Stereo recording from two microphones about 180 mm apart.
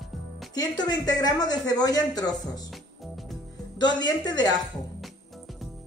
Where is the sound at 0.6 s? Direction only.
20° left (ahead or behind).